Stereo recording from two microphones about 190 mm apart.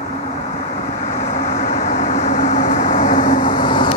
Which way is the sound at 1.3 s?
40° left (ahead or behind).